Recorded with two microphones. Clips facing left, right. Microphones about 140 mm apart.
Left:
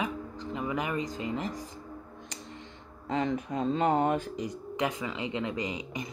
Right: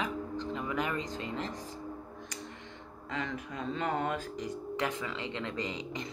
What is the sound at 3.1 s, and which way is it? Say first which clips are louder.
Speech: left 8 dB; 30° left (ahead or behind).